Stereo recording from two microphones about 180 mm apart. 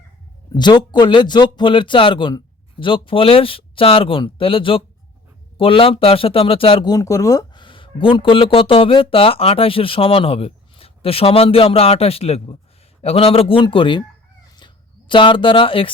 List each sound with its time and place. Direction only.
0.5 s speech: 25° left (ahead or behind)
14.4 s chicken: 25° left (ahead or behind)